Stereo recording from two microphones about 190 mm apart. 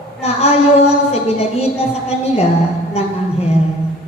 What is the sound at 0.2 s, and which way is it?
A woman's voice, 35° left (ahead or behind).